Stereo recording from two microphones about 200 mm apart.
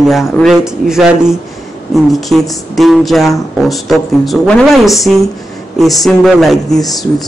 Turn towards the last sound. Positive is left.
turn(degrees=0)  # may be behind; listen again after turning